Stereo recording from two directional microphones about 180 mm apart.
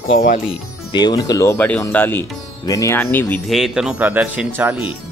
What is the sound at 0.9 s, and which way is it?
A man's voice, 20° left (ahead or behind).